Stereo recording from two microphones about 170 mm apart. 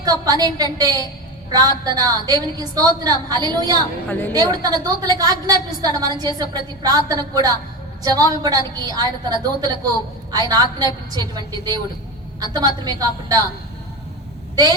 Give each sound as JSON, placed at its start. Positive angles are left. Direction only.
{"t": 0.0, "sound": "a woman's voice", "side_deg": -20}